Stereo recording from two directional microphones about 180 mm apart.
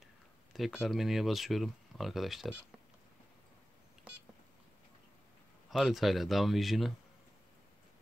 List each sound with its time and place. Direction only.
0.0 s speech: centre (ahead or behind)
5.7 s speech: centre (ahead or behind)